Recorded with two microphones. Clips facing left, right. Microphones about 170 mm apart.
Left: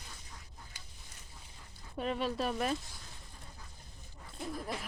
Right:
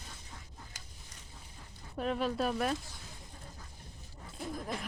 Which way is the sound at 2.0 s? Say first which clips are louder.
Right 2 dB; centre (ahead or behind).